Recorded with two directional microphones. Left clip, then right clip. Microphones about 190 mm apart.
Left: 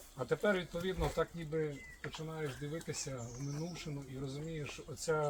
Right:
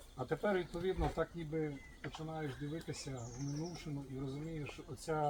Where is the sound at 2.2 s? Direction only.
5° left (ahead or behind).